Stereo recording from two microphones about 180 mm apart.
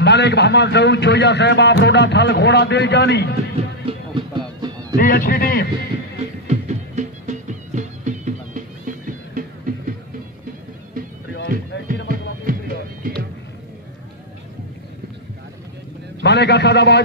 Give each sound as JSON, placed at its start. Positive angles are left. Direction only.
{"t": 0.0, "sound": "a man's voice", "side_deg": 70}
{"t": 3.8, "sound": "music", "side_deg": -25}
{"t": 4.9, "sound": "speech", "side_deg": 55}
{"t": 6.4, "sound": "music", "side_deg": -40}
{"t": 12.1, "sound": "music", "side_deg": -50}
{"t": 16.2, "sound": "a man's voice", "side_deg": 70}